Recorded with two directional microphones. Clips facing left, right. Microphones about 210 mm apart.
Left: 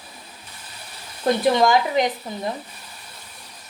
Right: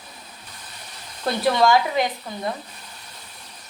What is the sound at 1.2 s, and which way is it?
Speech, 15° left (ahead or behind).